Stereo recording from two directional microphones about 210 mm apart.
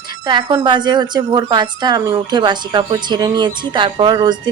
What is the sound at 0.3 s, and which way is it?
A woman's voice, 20° right (ahead or behind).